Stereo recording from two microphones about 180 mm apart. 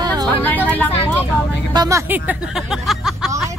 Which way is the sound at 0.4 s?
10° left (ahead or behind).